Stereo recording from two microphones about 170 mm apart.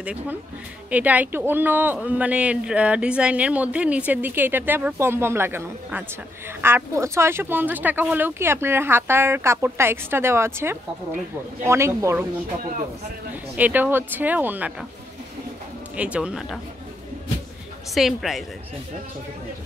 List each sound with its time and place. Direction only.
0.0 s speech: 5° right (ahead or behind)
13.3 s speech: 10° right (ahead or behind)
16.0 s speech: 5° right (ahead or behind)
17.9 s speech: centre (ahead or behind)